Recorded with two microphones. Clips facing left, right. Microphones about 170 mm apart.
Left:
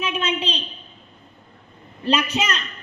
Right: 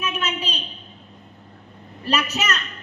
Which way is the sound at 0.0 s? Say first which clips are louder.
Left 3 dB; 30° left (ahead or behind).